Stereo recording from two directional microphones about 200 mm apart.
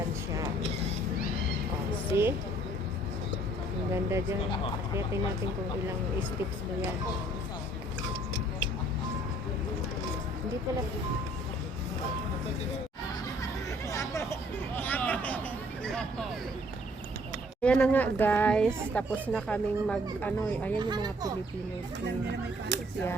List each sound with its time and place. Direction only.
2.1 s a sound: 10° right (ahead or behind)
3.9 s speech: 15° right (ahead or behind)
13.9 s hubbub: 15° left (ahead or behind)
14.8 s a sound: 10° left (ahead or behind)
15.8 s vehicle: 5° left (ahead or behind)
17.6 s speech: 5° left (ahead or behind)
20.7 s speech: 20° right (ahead or behind)